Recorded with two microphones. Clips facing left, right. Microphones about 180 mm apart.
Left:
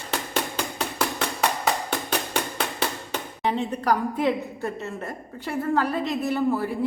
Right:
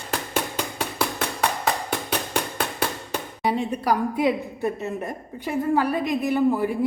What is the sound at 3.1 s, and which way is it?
A woman's voice, 10° right (ahead or behind).